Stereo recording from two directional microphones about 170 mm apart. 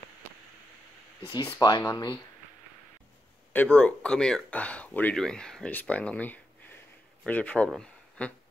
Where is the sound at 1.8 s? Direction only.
20° left (ahead or behind).